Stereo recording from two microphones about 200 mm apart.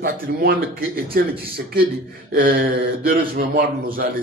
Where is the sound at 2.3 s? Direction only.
45° right (ahead or behind).